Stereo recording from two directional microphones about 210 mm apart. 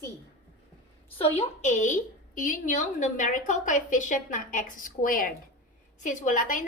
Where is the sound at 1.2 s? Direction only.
30° left (ahead or behind).